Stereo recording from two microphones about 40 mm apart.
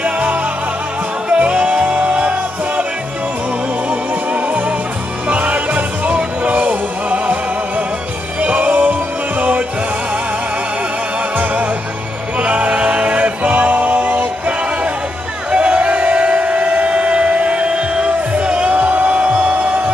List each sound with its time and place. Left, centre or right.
0.0 s music: right
4.1 s music: right
11.3 s music: right
15.5 s a sound: right
18.3 s music: right